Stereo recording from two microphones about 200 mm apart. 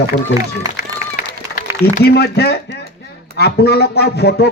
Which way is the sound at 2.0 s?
55° left (ahead or behind).